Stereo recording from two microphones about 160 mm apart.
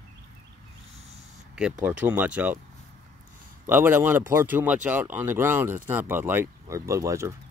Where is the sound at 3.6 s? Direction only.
15° right (ahead or behind).